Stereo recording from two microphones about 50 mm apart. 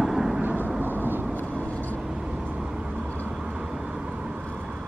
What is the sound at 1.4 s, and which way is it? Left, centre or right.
Vehicle, right.